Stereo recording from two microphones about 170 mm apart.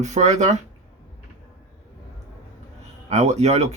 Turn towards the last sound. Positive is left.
turn(degrees=-40)  # may be behind; listen again after turning